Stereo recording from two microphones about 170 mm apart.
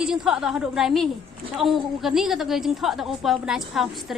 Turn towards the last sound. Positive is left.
turn(degrees=0)  # may be behind; listen again after turning